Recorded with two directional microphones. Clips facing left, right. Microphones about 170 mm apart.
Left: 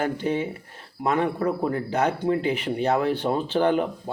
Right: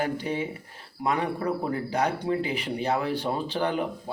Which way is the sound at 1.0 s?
45° left (ahead or behind).